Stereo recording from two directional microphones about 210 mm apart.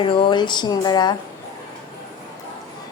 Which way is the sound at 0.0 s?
25° left (ahead or behind).